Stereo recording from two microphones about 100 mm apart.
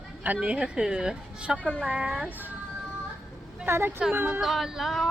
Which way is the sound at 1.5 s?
15° left (ahead or behind).